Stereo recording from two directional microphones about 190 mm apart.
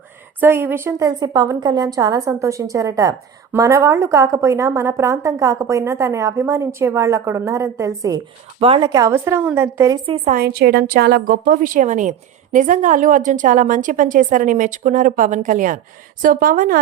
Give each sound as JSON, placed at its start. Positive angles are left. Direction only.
{"t": 0.3, "sound": "a woman's voice", "side_deg": -10}
{"t": 8.5, "sound": "a woman's voice", "side_deg": -30}
{"t": 10.3, "sound": "a woman's voice", "side_deg": -55}